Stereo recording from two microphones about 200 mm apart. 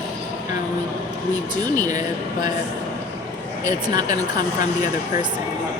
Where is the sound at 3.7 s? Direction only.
20° right (ahead or behind).